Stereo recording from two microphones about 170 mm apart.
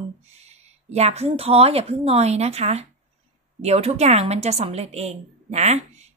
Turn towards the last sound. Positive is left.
turn(degrees=-40)  # may be behind; listen again after turning